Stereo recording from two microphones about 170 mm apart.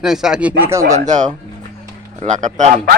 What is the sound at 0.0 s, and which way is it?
Speech, 5° right (ahead or behind).